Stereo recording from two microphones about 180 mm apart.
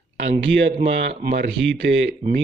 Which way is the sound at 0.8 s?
60° right (ahead or behind).